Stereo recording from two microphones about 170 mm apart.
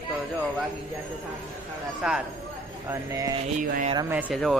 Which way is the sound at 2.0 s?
5° right (ahead or behind).